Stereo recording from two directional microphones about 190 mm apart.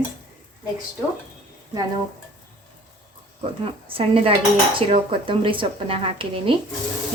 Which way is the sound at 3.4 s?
30° right (ahead or behind).